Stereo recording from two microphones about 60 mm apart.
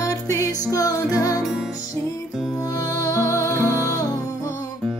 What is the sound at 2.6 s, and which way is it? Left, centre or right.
Music, left.